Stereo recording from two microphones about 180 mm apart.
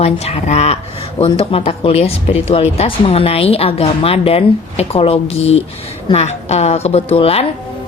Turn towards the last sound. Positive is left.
turn(degrees=30)  # may be behind; listen again after turning